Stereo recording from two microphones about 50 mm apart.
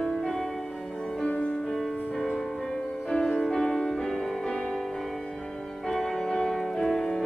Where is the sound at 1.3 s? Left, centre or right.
Left.